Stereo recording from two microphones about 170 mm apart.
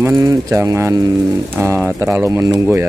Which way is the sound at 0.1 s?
20° right (ahead or behind).